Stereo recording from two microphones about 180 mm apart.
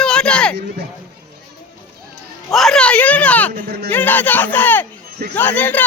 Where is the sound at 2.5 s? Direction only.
Centre (ahead or behind).